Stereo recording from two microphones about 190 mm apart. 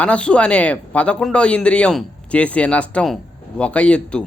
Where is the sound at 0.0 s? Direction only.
5° left (ahead or behind).